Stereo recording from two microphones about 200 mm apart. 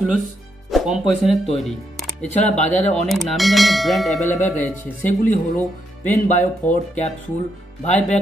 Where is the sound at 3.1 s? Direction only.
Centre (ahead or behind).